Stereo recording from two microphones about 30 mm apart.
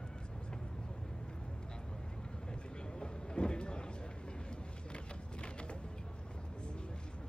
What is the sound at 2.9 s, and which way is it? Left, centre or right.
Train, left.